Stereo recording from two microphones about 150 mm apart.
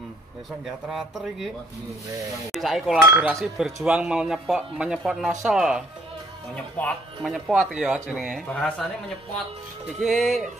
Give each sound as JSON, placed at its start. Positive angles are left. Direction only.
{"t": 0.7, "sound": "speech", "side_deg": 0}
{"t": 2.5, "sound": "speech", "side_deg": 0}
{"t": 3.0, "sound": "chink", "side_deg": -15}
{"t": 3.5, "sound": "speech", "side_deg": -5}
{"t": 6.8, "sound": "speech", "side_deg": 10}
{"t": 7.2, "sound": "speech", "side_deg": 0}
{"t": 8.5, "sound": "speech", "side_deg": 10}
{"t": 9.9, "sound": "speech", "side_deg": 0}